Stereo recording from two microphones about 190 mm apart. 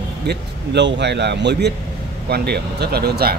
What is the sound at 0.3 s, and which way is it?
A man's voice, 65° right (ahead or behind).